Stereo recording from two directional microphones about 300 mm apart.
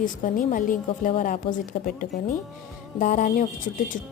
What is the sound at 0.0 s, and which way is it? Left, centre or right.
A woman's voice, left.